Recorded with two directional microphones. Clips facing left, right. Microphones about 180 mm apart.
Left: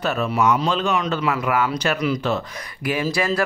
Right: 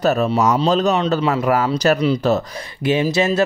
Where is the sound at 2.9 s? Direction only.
25° right (ahead or behind).